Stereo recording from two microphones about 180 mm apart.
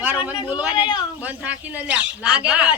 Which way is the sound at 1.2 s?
10° right (ahead or behind).